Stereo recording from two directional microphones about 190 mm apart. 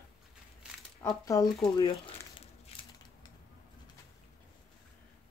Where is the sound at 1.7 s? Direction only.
25° left (ahead or behind).